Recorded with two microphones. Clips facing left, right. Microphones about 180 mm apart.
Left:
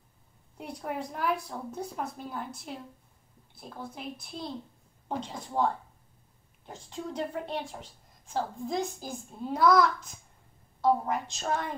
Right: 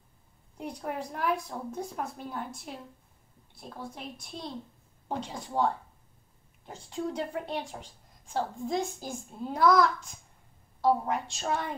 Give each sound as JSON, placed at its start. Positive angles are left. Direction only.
{"t": 0.6, "sound": "a woman's voice", "side_deg": 5}